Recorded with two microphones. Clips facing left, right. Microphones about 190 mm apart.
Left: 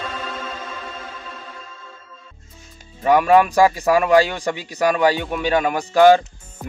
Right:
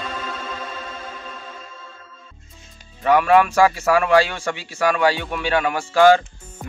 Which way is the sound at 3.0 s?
15° left (ahead or behind).